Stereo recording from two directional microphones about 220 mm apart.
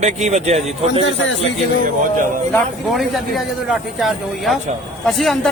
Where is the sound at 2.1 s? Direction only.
35° right (ahead or behind).